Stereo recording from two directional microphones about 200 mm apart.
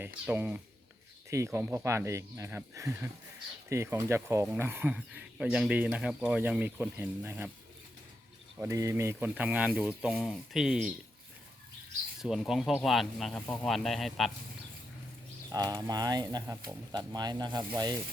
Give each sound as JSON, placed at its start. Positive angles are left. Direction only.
{"t": 0.0, "sound": "speech", "side_deg": -10}
{"t": 8.5, "sound": "speech", "side_deg": -15}
{"t": 12.2, "sound": "speech", "side_deg": 0}
{"t": 15.5, "sound": "speech", "side_deg": -20}